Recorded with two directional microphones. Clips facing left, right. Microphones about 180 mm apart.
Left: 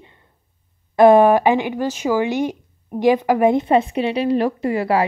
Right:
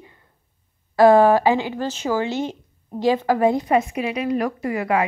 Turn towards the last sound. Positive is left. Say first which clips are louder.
# left 3 dB
turn(degrees=30)  # may be behind; listen again after turning